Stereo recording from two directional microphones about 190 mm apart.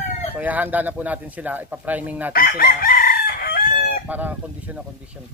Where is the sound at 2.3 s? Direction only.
50° left (ahead or behind).